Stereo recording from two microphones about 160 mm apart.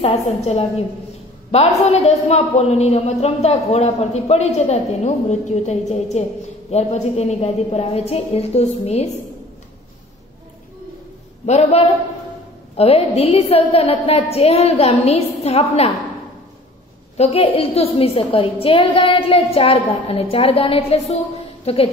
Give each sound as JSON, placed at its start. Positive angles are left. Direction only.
{"t": 0.0, "sound": "a woman's voice", "side_deg": 40}
{"t": 11.4, "sound": "a woman's voice", "side_deg": 45}
{"t": 17.2, "sound": "a woman's voice", "side_deg": 40}